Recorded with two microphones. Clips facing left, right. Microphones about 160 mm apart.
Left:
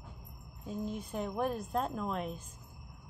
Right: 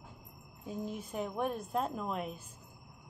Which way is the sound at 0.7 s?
5° right (ahead or behind).